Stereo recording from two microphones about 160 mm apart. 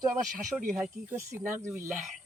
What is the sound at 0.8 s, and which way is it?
Speech, 15° right (ahead or behind).